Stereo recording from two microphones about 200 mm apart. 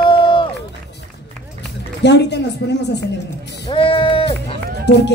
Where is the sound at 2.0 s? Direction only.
60° left (ahead or behind).